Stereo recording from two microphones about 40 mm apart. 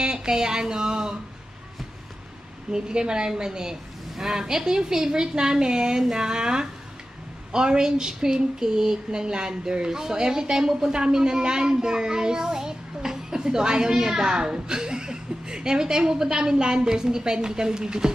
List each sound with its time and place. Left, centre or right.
0.0 s speech: centre
2.7 s a woman's voice: centre